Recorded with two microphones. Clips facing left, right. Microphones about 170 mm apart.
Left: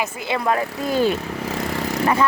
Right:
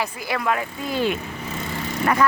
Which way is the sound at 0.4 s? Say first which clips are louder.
Left 4 dB; 35° left (ahead or behind).